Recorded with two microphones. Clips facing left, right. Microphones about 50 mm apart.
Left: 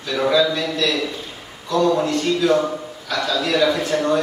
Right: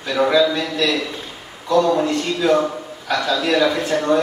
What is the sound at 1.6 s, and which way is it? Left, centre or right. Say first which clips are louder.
A man's voice: right 2 dB; right.